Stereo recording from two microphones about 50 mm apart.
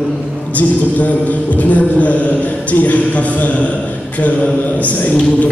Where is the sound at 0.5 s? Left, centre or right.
Left.